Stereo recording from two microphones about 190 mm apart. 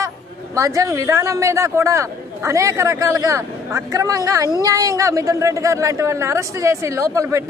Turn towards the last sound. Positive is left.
turn(degrees=-15)  # may be behind; listen again after turning